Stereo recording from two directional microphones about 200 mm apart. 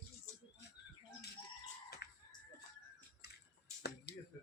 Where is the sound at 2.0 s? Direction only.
55° left (ahead or behind).